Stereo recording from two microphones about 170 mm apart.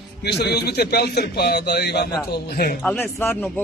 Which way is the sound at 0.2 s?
75° left (ahead or behind).